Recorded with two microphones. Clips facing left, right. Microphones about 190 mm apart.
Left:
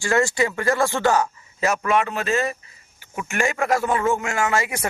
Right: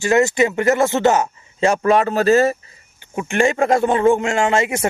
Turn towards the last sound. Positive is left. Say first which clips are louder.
# right 5 dB
turn(degrees=-25)  # may be behind; listen again after turning